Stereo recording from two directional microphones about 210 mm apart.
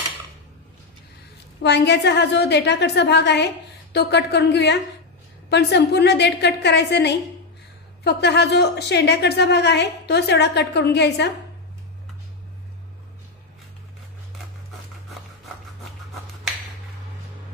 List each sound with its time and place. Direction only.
1.6 s a woman's voice: 55° left (ahead or behind)